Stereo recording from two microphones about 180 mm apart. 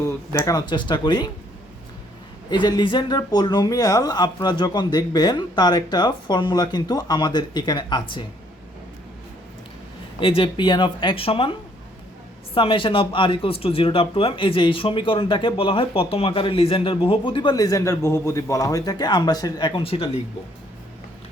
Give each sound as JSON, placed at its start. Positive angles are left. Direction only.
{"t": 0.3, "sound": "speech", "side_deg": 20}
{"t": 2.5, "sound": "speech", "side_deg": 25}
{"t": 10.2, "sound": "speech", "side_deg": 30}
{"t": 12.5, "sound": "speech", "side_deg": 30}